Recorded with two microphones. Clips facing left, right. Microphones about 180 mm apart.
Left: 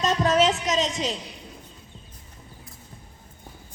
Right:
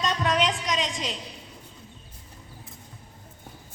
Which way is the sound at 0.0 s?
40° left (ahead or behind).